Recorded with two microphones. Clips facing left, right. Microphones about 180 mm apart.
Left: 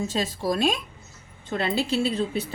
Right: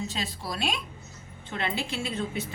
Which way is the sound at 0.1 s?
45° left (ahead or behind).